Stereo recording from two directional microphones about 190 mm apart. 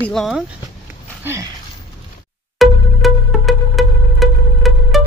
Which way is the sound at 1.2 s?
10° right (ahead or behind).